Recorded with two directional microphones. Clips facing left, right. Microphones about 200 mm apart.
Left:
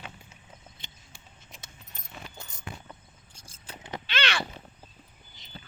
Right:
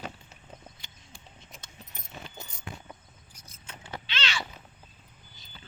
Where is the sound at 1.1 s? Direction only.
Centre (ahead or behind).